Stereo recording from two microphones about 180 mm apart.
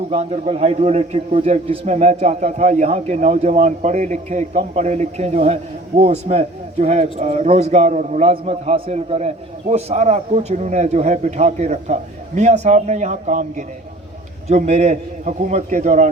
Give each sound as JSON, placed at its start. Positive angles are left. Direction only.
{"t": 0.1, "sound": "a man's voice", "side_deg": -35}